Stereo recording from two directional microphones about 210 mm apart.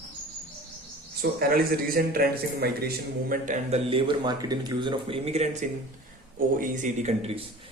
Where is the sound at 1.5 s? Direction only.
45° right (ahead or behind).